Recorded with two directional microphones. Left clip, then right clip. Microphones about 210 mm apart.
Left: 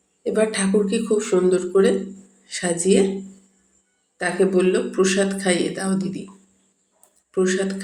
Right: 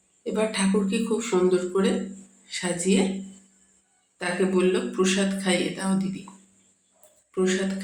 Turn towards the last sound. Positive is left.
turn(degrees=15)  # may be behind; listen again after turning